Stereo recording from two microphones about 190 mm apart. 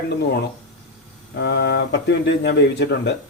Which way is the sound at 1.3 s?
60° left (ahead or behind).